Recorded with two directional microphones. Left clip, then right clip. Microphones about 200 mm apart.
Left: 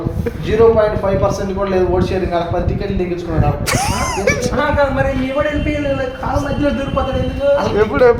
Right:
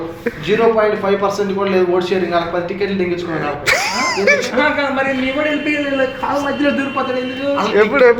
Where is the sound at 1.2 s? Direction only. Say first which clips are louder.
Right 1 dB; 35° left (ahead or behind).